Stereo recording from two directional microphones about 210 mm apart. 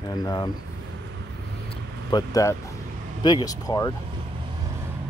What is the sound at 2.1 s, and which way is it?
Speech, 15° left (ahead or behind).